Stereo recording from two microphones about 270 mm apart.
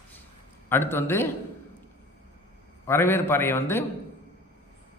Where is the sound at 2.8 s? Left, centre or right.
Centre.